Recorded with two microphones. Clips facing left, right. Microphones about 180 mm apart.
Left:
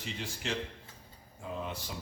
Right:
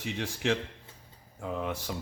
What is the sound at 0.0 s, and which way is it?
Speech, 75° right (ahead or behind).